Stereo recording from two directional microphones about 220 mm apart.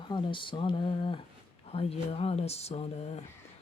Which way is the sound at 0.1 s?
20° left (ahead or behind).